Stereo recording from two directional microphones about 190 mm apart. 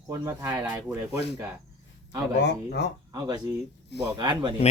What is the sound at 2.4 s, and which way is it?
Speech, 65° left (ahead or behind).